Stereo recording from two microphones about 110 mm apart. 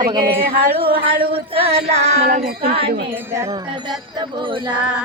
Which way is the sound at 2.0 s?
75° right (ahead or behind).